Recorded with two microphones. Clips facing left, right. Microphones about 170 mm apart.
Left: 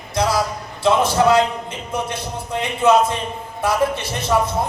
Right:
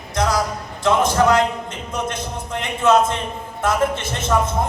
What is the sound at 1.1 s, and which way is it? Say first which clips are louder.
A man's voice: left 1 dB; 15° left (ahead or behind).